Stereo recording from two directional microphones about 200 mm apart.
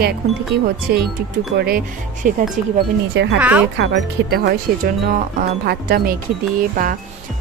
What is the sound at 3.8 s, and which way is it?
Speech, 55° right (ahead or behind).